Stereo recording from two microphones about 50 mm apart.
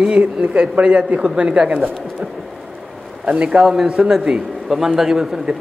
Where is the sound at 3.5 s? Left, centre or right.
Centre.